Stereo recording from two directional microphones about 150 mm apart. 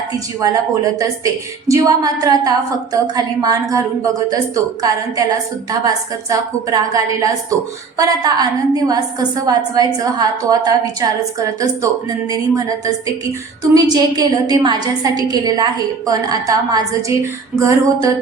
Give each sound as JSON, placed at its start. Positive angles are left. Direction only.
{"t": 0.4, "sound": "a woman's voice", "side_deg": -25}